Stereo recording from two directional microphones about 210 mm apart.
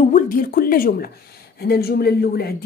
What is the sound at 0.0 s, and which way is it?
A woman's voice, 40° left (ahead or behind).